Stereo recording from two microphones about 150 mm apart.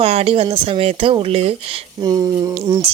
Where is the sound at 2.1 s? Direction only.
25° right (ahead or behind).